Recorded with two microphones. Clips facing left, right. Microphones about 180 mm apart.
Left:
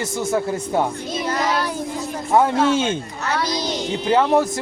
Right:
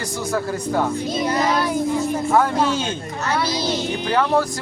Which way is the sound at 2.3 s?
25° left (ahead or behind).